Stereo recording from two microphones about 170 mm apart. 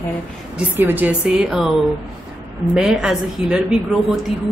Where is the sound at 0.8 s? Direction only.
10° right (ahead or behind).